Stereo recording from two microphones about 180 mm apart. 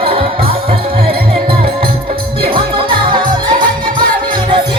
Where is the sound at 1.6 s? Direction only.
55° right (ahead or behind).